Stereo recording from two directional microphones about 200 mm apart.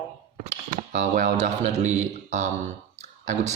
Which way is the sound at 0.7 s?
35° right (ahead or behind).